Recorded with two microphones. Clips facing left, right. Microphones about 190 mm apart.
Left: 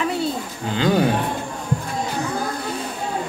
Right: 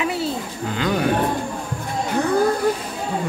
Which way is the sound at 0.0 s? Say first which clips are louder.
Left 1 dB; 5° right (ahead or behind).